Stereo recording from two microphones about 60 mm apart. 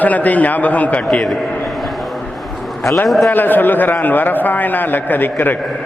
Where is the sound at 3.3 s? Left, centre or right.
Left.